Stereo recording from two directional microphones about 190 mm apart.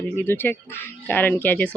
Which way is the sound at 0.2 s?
10° left (ahead or behind).